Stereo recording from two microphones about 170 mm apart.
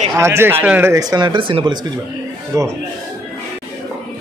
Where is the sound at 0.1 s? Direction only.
15° right (ahead or behind).